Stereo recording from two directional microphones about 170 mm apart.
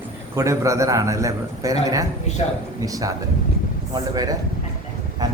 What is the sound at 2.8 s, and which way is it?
A man's voice, 20° right (ahead or behind).